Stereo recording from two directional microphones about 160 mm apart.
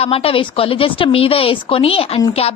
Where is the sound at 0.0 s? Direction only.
35° left (ahead or behind).